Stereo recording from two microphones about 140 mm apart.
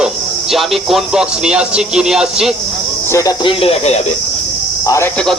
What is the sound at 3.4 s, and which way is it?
Speech, 45° left (ahead or behind).